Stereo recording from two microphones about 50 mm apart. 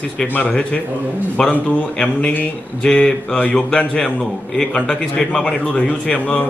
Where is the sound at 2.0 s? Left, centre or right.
Left.